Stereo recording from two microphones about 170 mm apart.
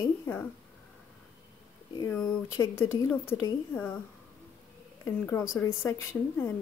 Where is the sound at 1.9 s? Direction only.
20° left (ahead or behind).